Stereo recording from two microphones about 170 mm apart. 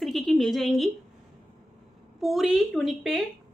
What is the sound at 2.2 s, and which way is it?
A woman's voice, centre (ahead or behind).